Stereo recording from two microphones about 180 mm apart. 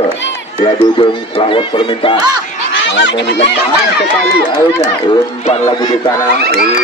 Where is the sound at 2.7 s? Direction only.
80° left.